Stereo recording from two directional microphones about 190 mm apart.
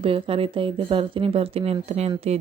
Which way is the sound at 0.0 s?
30° right (ahead or behind).